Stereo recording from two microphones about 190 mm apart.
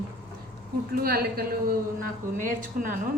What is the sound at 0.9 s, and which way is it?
Speech, 50° right (ahead or behind).